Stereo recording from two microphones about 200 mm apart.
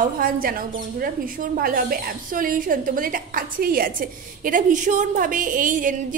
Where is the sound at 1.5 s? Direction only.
45° right (ahead or behind).